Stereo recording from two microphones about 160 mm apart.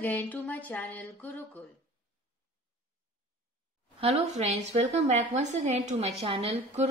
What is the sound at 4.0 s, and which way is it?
A woman's voice, 40° right (ahead or behind).